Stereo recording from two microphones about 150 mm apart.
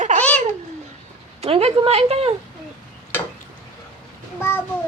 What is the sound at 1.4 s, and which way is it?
Speech, 40° right (ahead or behind).